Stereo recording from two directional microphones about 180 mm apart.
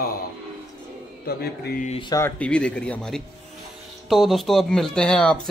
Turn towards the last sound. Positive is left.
turn(degrees=5)  # may be behind; listen again after turning